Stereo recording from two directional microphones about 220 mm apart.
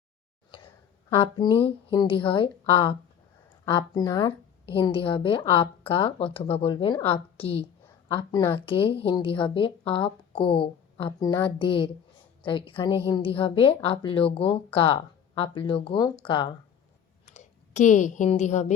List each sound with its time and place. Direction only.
1.1 s a woman's voice: 20° left (ahead or behind)
17.2 s speech: 35° left (ahead or behind)